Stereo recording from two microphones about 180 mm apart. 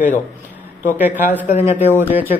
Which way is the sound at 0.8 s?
10° right (ahead or behind).